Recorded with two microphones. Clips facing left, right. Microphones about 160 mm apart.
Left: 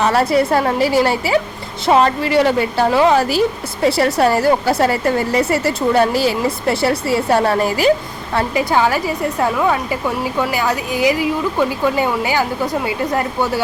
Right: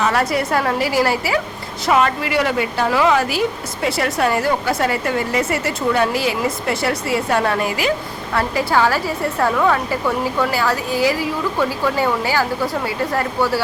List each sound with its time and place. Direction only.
0.0 s a woman's voice: 30° left (ahead or behind)
8.3 s a woman's voice: 20° left (ahead or behind)